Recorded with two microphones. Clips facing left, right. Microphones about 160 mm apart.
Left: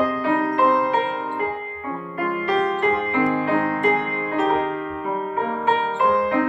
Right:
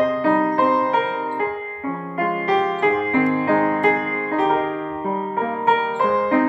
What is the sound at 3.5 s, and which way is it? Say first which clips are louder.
Music: right 2 dB; 40° right (ahead or behind).